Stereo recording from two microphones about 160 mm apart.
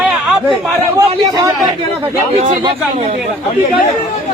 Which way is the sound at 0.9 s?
20° right (ahead or behind).